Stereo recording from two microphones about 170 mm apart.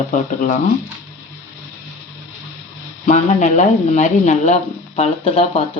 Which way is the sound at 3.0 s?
40° left (ahead or behind).